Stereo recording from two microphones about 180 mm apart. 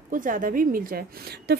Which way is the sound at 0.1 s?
45° right (ahead or behind).